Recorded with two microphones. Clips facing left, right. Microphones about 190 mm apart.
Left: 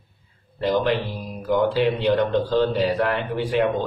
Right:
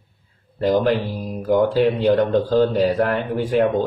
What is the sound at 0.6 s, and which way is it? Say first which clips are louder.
Speech: right 3 dB; 45° right (ahead or behind).